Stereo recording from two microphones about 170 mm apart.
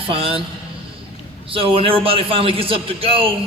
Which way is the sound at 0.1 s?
30° right (ahead or behind).